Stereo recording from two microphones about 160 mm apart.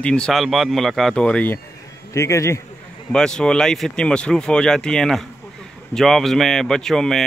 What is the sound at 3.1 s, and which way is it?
Speech, 5° left (ahead or behind).